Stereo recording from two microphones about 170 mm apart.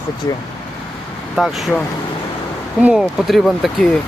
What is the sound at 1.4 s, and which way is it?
Speech, centre (ahead or behind).